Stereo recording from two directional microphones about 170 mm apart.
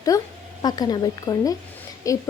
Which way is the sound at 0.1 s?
20° left (ahead or behind).